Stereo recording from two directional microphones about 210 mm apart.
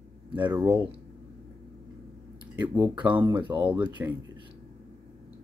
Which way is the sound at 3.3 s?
20° right (ahead or behind).